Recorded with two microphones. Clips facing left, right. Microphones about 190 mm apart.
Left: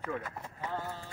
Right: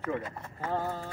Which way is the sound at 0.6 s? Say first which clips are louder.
Right 6 dB; 50° right (ahead or behind).